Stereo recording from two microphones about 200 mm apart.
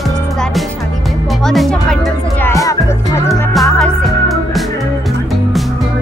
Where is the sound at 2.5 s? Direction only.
15° left (ahead or behind).